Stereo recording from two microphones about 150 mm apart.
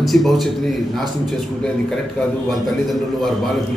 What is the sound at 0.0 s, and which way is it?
Speech, centre (ahead or behind).